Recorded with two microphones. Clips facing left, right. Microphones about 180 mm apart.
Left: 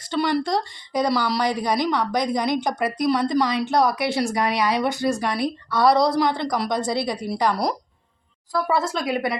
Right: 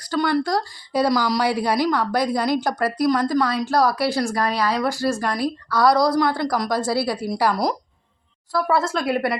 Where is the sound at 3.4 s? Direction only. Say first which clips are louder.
Even; 20° left (ahead or behind).